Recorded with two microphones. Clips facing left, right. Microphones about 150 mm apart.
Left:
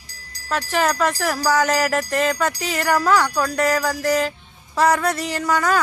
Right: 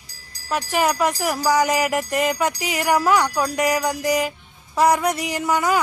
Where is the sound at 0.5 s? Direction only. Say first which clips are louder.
Even; 10° right (ahead or behind).